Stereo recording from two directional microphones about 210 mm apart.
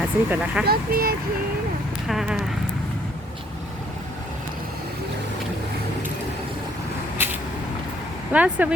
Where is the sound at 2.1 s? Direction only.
Centre (ahead or behind).